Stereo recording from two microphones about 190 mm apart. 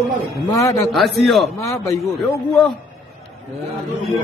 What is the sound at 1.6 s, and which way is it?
Speech, 15° left (ahead or behind).